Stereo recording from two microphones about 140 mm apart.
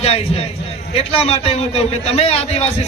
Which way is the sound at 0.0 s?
45° left (ahead or behind).